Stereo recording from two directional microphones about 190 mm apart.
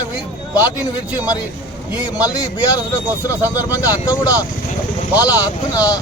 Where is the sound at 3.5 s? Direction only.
20° left (ahead or behind).